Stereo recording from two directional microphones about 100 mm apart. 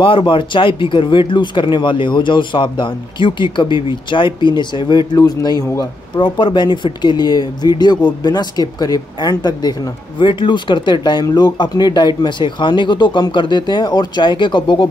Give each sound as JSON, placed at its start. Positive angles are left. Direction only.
{"t": 0.0, "sound": "speech", "side_deg": 60}
{"t": 6.1, "sound": "speech", "side_deg": 55}